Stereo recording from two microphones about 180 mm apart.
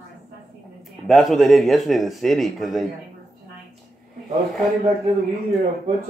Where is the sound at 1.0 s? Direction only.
Centre (ahead or behind).